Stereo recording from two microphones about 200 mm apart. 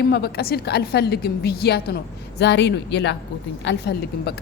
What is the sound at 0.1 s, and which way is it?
A woman's voice, 55° left (ahead or behind).